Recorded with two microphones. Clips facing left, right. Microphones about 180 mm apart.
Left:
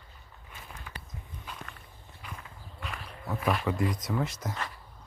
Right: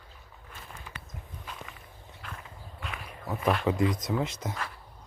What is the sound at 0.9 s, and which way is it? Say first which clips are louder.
Walk: left 1 dB; 35° left (ahead or behind).